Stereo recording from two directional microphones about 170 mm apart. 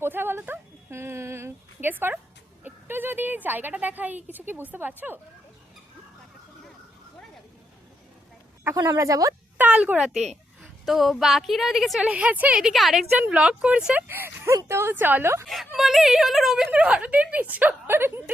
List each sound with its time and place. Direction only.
0.0 s a sound: 10° right (ahead or behind)
2.6 s speech: 10° right (ahead or behind)
8.6 s speech: 20° right (ahead or behind)
9.6 s a woman's voice: 10° right (ahead or behind)
15.4 s speech: centre (ahead or behind)